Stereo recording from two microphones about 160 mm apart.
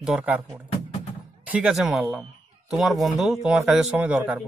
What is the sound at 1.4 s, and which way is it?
Speech, 5° right (ahead or behind).